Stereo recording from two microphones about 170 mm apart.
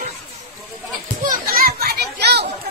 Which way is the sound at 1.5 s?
60° right (ahead or behind).